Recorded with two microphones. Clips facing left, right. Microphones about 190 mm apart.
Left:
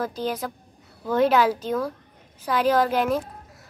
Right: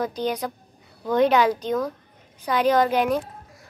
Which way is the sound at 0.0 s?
5° left (ahead or behind).